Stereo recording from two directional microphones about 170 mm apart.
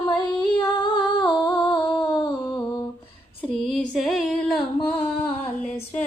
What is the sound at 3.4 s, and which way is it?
Female singing, 5° left (ahead or behind).